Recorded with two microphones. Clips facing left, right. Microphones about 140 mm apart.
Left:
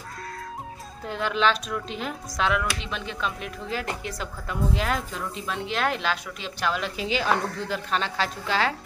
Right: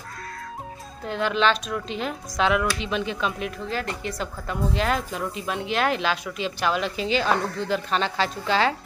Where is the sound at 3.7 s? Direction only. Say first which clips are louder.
Left 2 dB; 5° left (ahead or behind).